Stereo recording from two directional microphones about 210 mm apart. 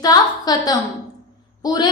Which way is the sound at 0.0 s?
20° left (ahead or behind).